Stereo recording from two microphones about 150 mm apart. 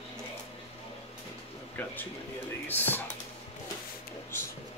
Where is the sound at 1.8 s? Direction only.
10° left (ahead or behind).